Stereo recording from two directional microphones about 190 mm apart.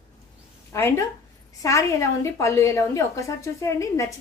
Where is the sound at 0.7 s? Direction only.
15° left (ahead or behind).